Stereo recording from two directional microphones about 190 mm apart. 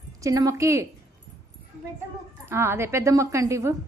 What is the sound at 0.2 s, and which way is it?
Speech, 15° right (ahead or behind).